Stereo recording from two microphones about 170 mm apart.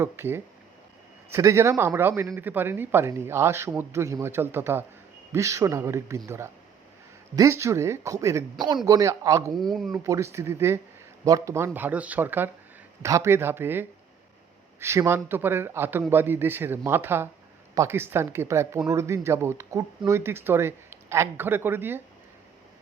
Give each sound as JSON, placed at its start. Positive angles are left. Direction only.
{"t": 0.0, "sound": "speech", "side_deg": -15}
{"t": 9.6, "sound": "speech", "side_deg": 0}
{"t": 9.9, "sound": "speech", "side_deg": -20}